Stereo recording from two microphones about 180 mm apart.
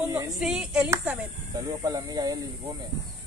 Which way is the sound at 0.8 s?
15° right (ahead or behind).